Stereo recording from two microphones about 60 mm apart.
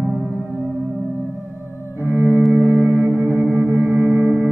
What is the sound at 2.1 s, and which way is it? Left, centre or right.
Cello, right.